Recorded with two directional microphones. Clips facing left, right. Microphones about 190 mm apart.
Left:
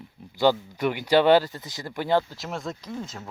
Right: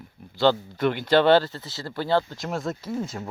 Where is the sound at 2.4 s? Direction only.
Centre (ahead or behind).